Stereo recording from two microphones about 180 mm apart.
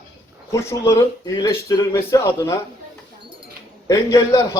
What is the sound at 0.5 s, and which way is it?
Speech, 15° left (ahead or behind).